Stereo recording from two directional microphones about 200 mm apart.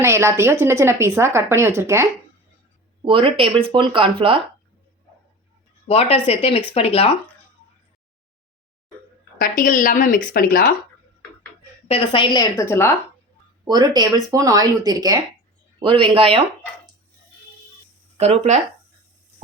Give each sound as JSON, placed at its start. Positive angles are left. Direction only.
{"t": 0.0, "sound": "a woman's voice", "side_deg": -15}
{"t": 3.0, "sound": "speech", "side_deg": -25}
{"t": 5.9, "sound": "speech", "side_deg": 30}
{"t": 9.4, "sound": "speech", "side_deg": 45}
{"t": 11.9, "sound": "speech", "side_deg": 25}
{"t": 13.7, "sound": "speech", "side_deg": -20}
{"t": 18.2, "sound": "speech", "side_deg": -35}